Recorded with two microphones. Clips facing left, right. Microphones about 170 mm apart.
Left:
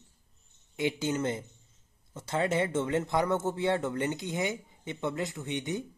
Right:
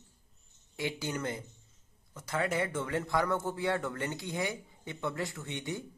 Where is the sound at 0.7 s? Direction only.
20° left (ahead or behind).